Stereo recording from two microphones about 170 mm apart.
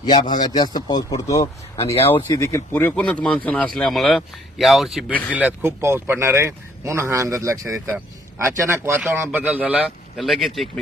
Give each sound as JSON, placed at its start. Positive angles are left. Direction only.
{"t": 0.0, "sound": "speech", "side_deg": 25}
{"t": 5.3, "sound": "speech", "side_deg": -10}